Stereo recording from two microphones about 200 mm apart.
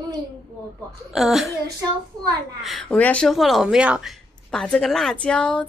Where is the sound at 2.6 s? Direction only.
Centre (ahead or behind).